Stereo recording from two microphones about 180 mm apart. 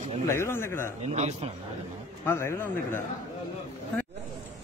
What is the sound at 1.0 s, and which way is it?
Speech, 35° right (ahead or behind).